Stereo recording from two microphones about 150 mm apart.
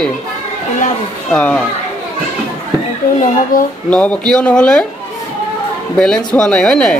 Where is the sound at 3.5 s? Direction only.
65° left (ahead or behind).